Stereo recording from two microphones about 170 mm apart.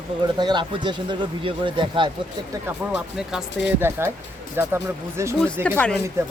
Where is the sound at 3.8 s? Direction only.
15° right (ahead or behind).